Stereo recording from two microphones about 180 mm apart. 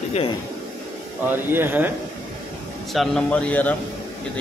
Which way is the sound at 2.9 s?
Centre (ahead or behind).